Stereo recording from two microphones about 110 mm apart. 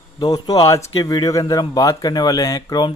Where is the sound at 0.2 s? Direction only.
35° left (ahead or behind).